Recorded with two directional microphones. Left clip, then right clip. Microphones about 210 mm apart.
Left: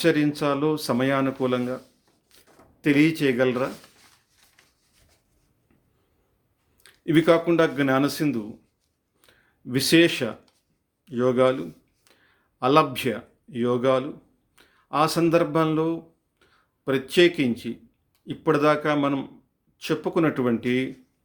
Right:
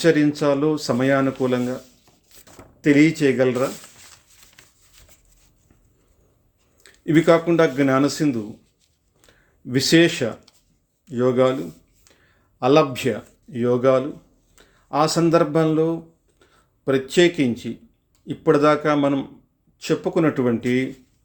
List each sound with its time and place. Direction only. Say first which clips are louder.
0.0 s speech: right 4 dB; 10° left (ahead or behind)
2.8 s speech: right 4 dB; 10° left (ahead or behind)
5.0 s a sound: right 10 dB; 45° right (ahead or behind)
6.8 s speech: right 3 dB; 10° left (ahead or behind)
9.2 s a sound: right 3 dB; 10° left (ahead or behind)
11.0 s speech: right 2 dB; 10° left (ahead or behind)
12.5 s speech: right 3 dB; 10° left (ahead or behind)